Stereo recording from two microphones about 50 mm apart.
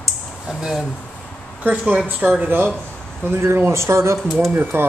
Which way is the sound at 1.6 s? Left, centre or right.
Right.